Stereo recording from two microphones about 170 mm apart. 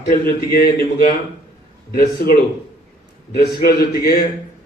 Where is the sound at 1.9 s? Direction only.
65° left (ahead or behind).